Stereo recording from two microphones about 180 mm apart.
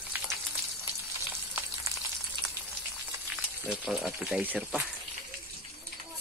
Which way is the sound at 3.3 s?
5° right (ahead or behind).